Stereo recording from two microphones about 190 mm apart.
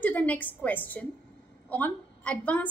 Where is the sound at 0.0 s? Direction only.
10° left (ahead or behind).